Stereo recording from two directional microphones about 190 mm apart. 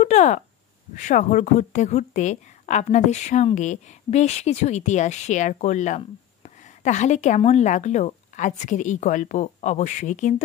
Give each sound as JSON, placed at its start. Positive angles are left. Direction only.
{"t": 0.0, "sound": "speech", "side_deg": 40}